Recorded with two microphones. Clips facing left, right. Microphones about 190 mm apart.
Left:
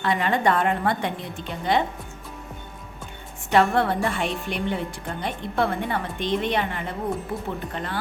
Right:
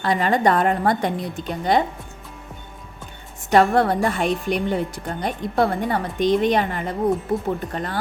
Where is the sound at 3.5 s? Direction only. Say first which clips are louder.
Right 4 dB; 40° right (ahead or behind).